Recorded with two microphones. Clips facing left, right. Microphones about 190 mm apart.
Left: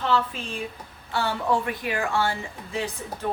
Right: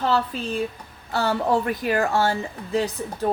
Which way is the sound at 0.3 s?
35° right (ahead or behind).